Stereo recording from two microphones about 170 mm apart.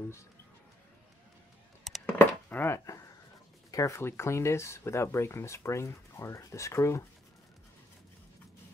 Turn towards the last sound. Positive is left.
turn(degrees=15)  # may be behind; listen again after turning